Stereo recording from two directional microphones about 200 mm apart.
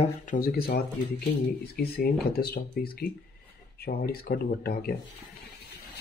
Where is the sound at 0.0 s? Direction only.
40° left (ahead or behind).